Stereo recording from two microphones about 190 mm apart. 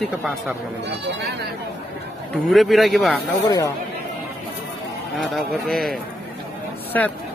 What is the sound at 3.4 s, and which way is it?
Speech, 15° left (ahead or behind).